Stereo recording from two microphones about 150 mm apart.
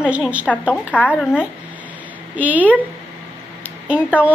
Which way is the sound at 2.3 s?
10° right (ahead or behind).